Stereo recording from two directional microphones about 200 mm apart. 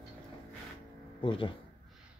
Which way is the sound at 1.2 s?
25° left (ahead or behind).